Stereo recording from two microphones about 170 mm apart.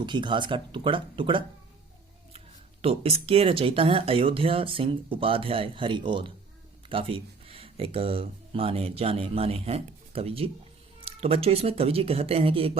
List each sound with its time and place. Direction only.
0.0 s speech: 25° right (ahead or behind)
2.8 s speech: 35° right (ahead or behind)